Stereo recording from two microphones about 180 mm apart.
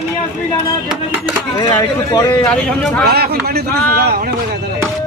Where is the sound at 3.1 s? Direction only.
60° right (ahead or behind).